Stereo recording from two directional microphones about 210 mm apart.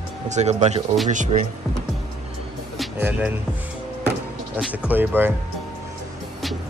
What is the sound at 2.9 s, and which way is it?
Speech, 10° right (ahead or behind).